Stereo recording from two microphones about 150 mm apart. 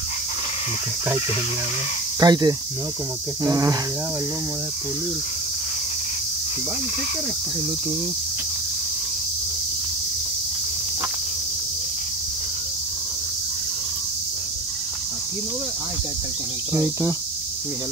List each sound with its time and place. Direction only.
2.1 s speech: 25° right (ahead or behind)
16.7 s speech: 15° right (ahead or behind)